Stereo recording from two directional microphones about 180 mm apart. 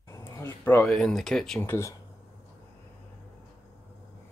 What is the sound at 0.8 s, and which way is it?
Speech, centre (ahead or behind).